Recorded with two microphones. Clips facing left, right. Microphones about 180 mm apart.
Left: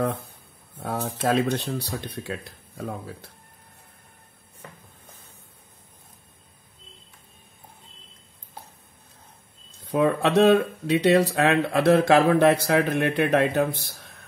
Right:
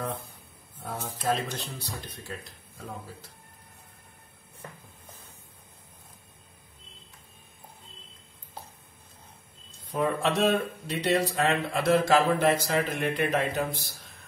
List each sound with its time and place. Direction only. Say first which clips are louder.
0.7 s speech: left 7 dB; 70° left (ahead or behind)
9.8 s speech: left 5 dB; 70° left (ahead or behind)